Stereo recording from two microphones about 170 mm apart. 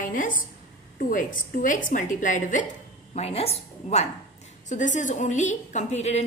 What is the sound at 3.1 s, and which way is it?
A woman's voice, 35° left (ahead or behind).